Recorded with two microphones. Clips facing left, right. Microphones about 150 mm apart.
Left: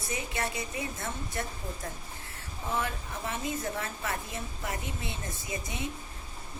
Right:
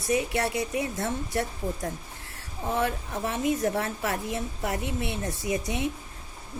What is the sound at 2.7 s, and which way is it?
A woman's voice, 70° right (ahead or behind).